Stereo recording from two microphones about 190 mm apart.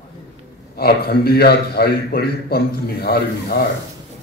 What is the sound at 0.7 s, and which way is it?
A man's voice, 55° left (ahead or behind).